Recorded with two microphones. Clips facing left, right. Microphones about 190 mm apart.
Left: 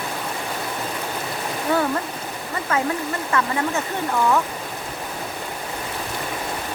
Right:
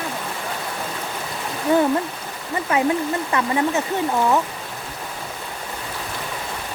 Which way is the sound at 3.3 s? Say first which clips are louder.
Left 1 dB; 15° right (ahead or behind).